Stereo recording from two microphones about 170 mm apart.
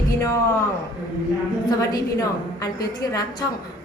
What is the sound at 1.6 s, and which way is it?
A woman's voice, 20° left (ahead or behind).